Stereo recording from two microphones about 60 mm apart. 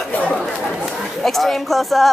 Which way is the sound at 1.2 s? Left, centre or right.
Centre.